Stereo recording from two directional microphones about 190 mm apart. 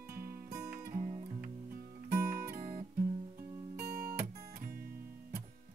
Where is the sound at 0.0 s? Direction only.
15° right (ahead or behind).